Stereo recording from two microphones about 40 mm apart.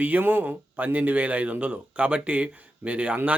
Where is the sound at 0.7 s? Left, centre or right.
Right.